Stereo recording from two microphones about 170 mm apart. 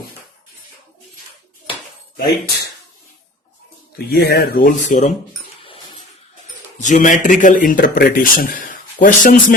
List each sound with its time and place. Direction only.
3.9 s speech: 65° left (ahead or behind); by 5.1 s 45° left (ahead or behind)
6.8 s speech: 50° left (ahead or behind)